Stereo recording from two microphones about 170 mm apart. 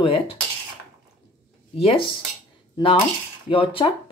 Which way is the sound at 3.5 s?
30° left (ahead or behind).